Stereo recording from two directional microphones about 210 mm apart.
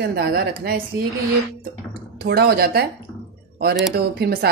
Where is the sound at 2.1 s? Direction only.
50° right (ahead or behind).